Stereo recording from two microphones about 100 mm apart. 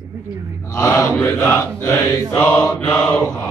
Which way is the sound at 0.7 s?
30° left (ahead or behind).